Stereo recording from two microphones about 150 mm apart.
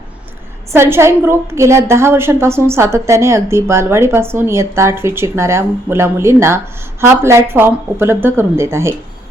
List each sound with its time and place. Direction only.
0.7 s a woman's voice: 15° right (ahead or behind)